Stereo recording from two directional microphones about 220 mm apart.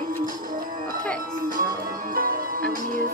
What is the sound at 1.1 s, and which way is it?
Speech, 40° right (ahead or behind).